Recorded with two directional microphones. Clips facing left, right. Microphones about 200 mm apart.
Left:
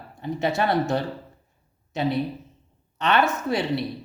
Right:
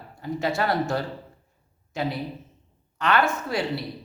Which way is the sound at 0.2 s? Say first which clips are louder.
Left 2 dB; 20° left (ahead or behind).